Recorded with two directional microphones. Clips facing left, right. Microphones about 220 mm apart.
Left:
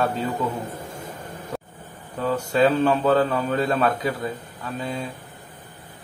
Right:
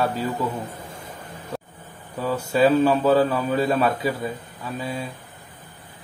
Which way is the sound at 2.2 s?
5° right (ahead or behind).